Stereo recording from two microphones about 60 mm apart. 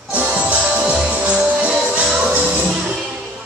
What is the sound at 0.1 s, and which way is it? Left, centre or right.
Music, right.